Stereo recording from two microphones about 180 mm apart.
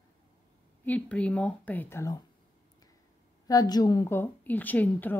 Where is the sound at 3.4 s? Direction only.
20° left (ahead or behind).